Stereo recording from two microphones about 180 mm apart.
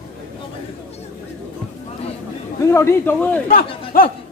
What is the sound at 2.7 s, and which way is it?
Speech, 15° left (ahead or behind).